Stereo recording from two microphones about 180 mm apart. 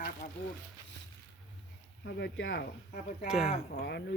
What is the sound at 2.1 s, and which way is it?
Speech, 75° left (ahead or behind).